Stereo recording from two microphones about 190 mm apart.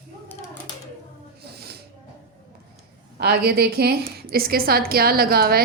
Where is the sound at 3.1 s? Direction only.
55° right (ahead or behind).